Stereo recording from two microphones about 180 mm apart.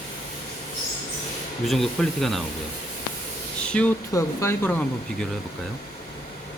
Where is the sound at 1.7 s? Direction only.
Centre (ahead or behind).